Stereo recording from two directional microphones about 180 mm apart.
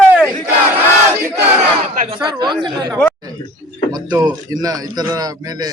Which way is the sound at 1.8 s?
35° right (ahead or behind).